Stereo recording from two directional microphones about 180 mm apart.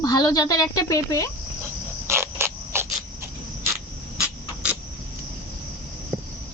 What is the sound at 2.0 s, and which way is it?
Mechanisms, 15° right (ahead or behind).